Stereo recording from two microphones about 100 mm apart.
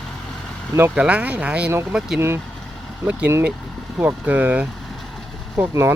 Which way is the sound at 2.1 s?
25° right (ahead or behind).